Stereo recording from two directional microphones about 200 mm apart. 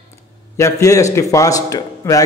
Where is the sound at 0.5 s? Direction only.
15° left (ahead or behind).